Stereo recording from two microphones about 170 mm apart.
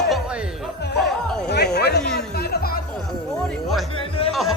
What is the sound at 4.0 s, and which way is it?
Music, 35° left (ahead or behind).